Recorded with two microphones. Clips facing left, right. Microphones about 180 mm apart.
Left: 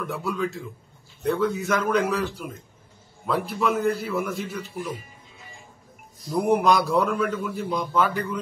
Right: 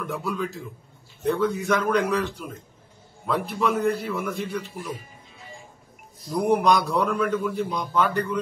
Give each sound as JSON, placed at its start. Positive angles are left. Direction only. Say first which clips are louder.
{"t": 0.0, "sound": "a man's voice", "louder": "left 1 dB", "side_deg": 0}
{"t": 6.3, "sound": "a man's voice", "louder": "even", "side_deg": 0}